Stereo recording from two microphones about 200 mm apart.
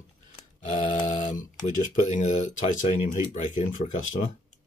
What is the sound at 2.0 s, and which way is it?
Speech, 35° left (ahead or behind).